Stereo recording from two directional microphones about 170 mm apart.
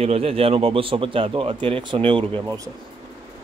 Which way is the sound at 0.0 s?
35° right (ahead or behind).